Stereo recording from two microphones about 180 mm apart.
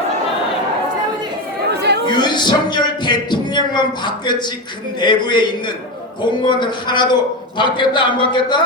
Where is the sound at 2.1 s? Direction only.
25° left (ahead or behind).